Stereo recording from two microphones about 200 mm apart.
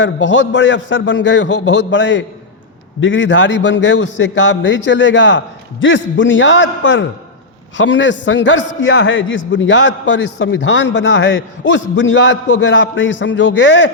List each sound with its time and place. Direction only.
0.0 s a man's voice: 65° left (ahead or behind)